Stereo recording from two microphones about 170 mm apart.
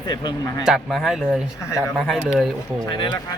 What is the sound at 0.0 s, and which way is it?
Speech, 25° left (ahead or behind).